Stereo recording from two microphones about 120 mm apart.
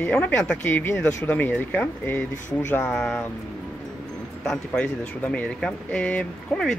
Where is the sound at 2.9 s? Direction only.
5° left (ahead or behind).